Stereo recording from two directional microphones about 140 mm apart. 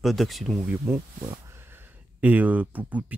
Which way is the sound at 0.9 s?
20° right (ahead or behind).